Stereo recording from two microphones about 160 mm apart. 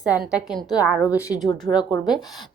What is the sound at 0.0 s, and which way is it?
A woman's voice, 5° right (ahead or behind).